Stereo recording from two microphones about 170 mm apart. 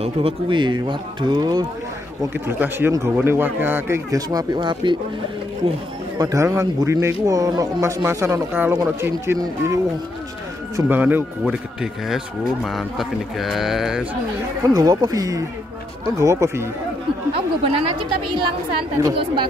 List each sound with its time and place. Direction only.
0.0 s speech: 30° right (ahead or behind)
2.4 s a man's voice: 15° right (ahead or behind)
6.1 s a man's voice: 20° right (ahead or behind)
10.9 s a man's voice: 10° right (ahead or behind)
14.7 s a man's voice: 20° right (ahead or behind)
17.3 s a woman's voice: 35° right (ahead or behind)
19.0 s speech: 20° right (ahead or behind)